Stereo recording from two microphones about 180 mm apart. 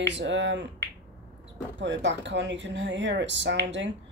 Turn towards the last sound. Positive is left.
turn(degrees=-85)